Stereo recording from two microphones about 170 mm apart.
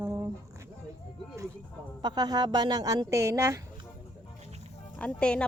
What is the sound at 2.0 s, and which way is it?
A woman's voice, 25° right (ahead or behind).